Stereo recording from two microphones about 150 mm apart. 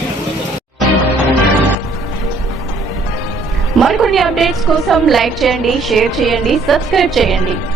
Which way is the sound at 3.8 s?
Centre (ahead or behind).